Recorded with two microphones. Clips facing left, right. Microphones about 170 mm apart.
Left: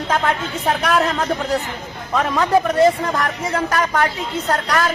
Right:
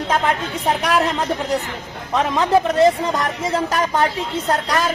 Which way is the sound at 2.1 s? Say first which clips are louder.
Even; 20° right (ahead or behind).